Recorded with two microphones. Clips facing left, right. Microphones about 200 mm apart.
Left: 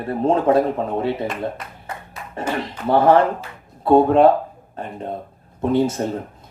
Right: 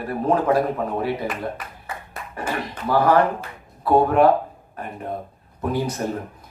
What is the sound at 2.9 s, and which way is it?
Speech, 25° left (ahead or behind).